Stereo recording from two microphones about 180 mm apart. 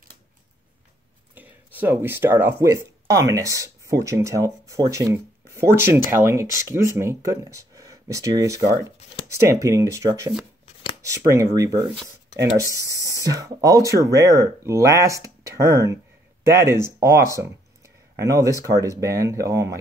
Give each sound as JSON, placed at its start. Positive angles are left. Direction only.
{"t": 1.3, "sound": "speech", "side_deg": -10}
{"t": 10.6, "sound": "shuffling cards", "side_deg": 30}
{"t": 11.0, "sound": "speech", "side_deg": -15}
{"t": 13.2, "sound": "speech", "side_deg": -20}